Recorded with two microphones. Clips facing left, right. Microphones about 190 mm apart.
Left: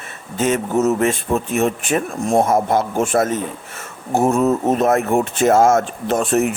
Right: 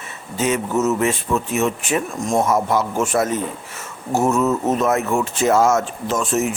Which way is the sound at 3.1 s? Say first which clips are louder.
Left 2 dB; 50° left (ahead or behind).